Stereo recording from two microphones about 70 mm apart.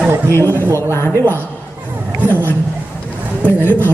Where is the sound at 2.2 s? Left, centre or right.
Right.